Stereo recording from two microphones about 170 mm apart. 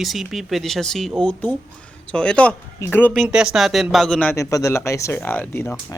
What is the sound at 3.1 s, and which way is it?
Speech, 5° right (ahead or behind).